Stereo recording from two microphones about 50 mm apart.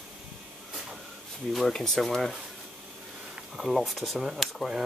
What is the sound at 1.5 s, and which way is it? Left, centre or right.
Speech, centre.